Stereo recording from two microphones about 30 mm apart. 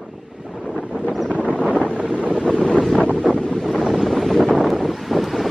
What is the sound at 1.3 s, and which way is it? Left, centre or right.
Wind noise, right.